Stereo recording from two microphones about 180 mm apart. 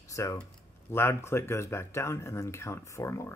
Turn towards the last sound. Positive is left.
turn(degrees=15)  # may be behind; listen again after turning